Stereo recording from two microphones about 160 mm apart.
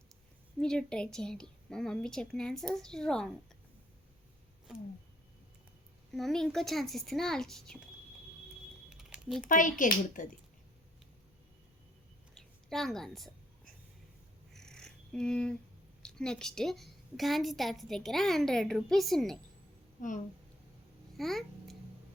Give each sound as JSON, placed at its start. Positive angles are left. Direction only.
{"t": 0.6, "sound": "a woman's voice", "side_deg": 5}
{"t": 6.1, "sound": "a woman's voice", "side_deg": 0}
{"t": 9.0, "sound": "typing", "side_deg": -5}
{"t": 9.5, "sound": "speech", "side_deg": 55}
{"t": 12.3, "sound": "a sound", "side_deg": 5}
{"t": 14.5, "sound": "bird", "side_deg": 5}
{"t": 16.0, "sound": "a woman's voice", "side_deg": 5}
{"t": 20.0, "sound": "speech", "side_deg": 55}
{"t": 21.2, "sound": "babbling", "side_deg": 0}